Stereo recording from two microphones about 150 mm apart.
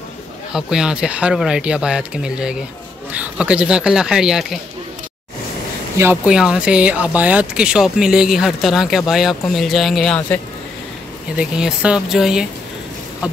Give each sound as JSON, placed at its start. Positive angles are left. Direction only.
{"t": 0.5, "sound": "speech", "side_deg": -5}
{"t": 5.9, "sound": "speech", "side_deg": -15}
{"t": 6.3, "sound": "speech", "side_deg": -5}
{"t": 11.3, "sound": "speech", "side_deg": -5}